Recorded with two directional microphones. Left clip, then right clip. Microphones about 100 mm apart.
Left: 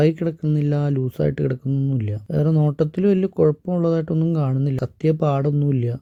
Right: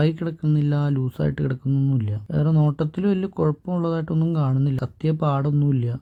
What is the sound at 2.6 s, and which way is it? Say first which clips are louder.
Speech: left 4 dB; 35° left (ahead or behind).